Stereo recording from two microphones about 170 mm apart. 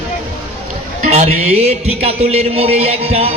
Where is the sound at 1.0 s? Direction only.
40° right (ahead or behind).